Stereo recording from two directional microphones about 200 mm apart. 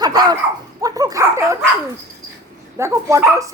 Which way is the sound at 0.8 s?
20° right (ahead or behind).